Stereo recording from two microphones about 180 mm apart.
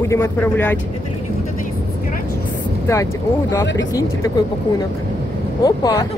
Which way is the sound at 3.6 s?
90° left.